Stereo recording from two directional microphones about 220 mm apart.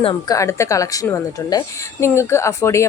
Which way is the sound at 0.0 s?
15° left (ahead or behind).